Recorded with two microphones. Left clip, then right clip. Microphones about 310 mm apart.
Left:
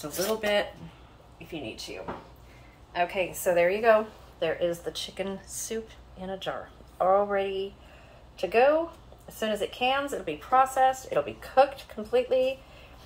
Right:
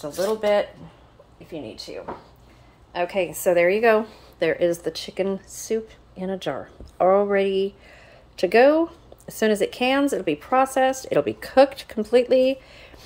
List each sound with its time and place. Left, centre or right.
0.0 s speech: centre
2.9 s a woman's voice: right